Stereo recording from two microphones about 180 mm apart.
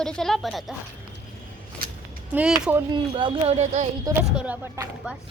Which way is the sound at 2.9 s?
25° right (ahead or behind).